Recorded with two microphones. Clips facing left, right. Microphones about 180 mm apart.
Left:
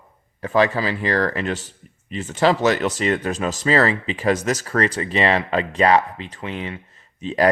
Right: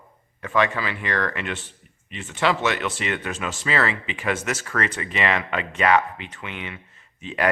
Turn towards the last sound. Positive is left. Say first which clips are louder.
# left 7 dB
turn(degrees=35)  # may be behind; listen again after turning